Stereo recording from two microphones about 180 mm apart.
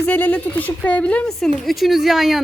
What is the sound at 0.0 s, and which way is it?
A woman's voice, 10° left (ahead or behind).